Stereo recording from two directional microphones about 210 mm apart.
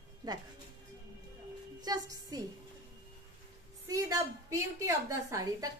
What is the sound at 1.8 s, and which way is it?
Speech, 15° right (ahead or behind).